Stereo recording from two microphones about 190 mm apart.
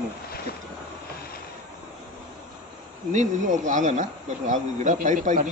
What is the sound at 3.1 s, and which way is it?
Speech, 40° right (ahead or behind).